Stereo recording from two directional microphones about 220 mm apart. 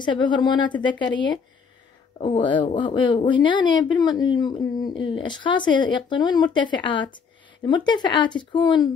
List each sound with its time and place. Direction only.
0.0 s speech: 20° left (ahead or behind)